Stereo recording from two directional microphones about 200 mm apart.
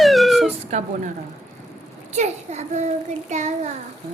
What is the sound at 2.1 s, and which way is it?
A child's voice, 35° right (ahead or behind).